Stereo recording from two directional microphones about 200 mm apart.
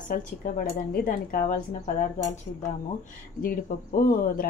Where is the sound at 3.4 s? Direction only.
45° left (ahead or behind).